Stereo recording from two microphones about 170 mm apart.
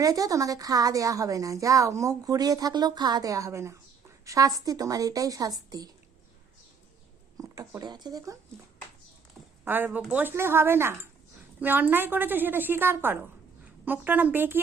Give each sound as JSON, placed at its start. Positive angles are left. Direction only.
{"t": 0.0, "sound": "a woman's voice", "side_deg": -20}
{"t": 7.3, "sound": "speech", "side_deg": -20}
{"t": 9.6, "sound": "a woman's voice", "side_deg": -10}